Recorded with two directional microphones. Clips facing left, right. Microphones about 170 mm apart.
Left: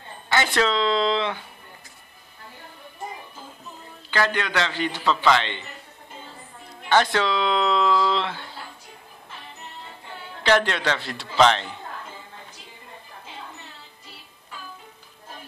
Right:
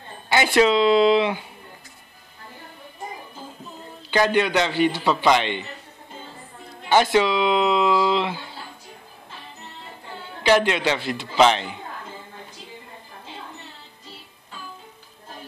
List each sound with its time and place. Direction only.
0.3 s speech: 15° right (ahead or behind)
4.1 s speech: 15° right (ahead or behind)
6.9 s speech: 10° right (ahead or behind)
10.4 s speech: 10° right (ahead or behind)